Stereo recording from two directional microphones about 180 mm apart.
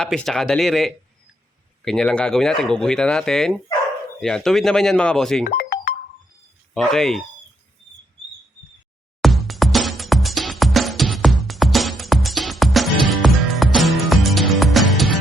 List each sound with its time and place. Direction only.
0.0 s speech: centre (ahead or behind)
5.5 s music: 55° left (ahead or behind)
6.7 s speech: centre (ahead or behind)
9.2 s music: centre (ahead or behind)